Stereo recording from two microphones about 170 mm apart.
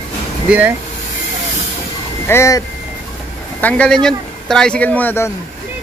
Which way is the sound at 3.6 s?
5° left (ahead or behind).